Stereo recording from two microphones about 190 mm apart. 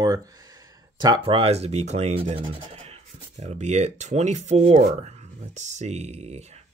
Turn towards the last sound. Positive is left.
turn(degrees=-35)  # may be behind; listen again after turning